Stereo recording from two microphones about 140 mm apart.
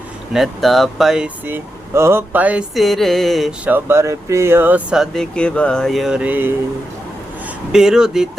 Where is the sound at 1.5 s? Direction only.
15° right (ahead or behind); by 3.7 s centre (ahead or behind).